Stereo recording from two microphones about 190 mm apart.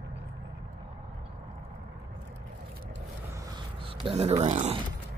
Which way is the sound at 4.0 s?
30° right (ahead or behind).